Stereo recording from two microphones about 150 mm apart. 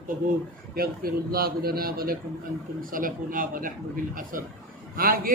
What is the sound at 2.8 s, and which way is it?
Speech, 70° right (ahead or behind).